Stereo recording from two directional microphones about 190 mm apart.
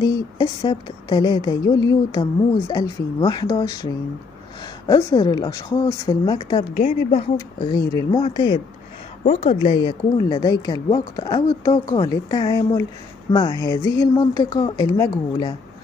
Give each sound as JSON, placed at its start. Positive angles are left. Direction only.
{"t": 0.0, "sound": "speech", "side_deg": 25}
{"t": 9.2, "sound": "speech", "side_deg": 35}